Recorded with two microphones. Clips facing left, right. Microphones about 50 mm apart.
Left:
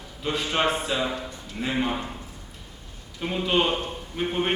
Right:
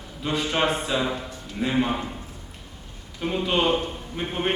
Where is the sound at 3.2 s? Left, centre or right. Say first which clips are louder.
Right 1 dB; centre.